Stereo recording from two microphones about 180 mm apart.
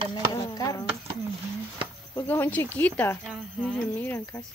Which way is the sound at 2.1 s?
10° left (ahead or behind).